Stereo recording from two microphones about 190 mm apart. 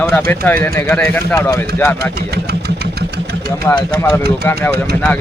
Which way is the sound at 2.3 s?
60° right (ahead or behind).